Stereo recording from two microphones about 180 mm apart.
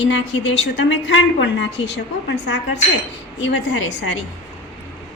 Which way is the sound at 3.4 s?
90° left.